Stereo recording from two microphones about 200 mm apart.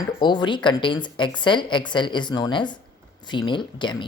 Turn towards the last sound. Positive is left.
turn(degrees=25)  # may be behind; listen again after turning